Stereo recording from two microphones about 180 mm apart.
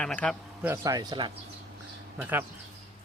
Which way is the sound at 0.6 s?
15° right (ahead or behind).